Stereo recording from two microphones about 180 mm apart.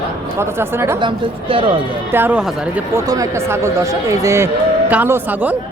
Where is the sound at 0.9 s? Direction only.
30° right (ahead or behind).